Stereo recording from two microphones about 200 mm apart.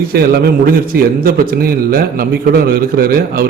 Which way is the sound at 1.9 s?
50° right (ahead or behind).